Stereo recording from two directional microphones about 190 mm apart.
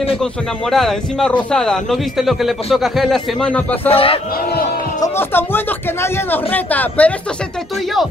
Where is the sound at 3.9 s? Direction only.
30° left (ahead or behind).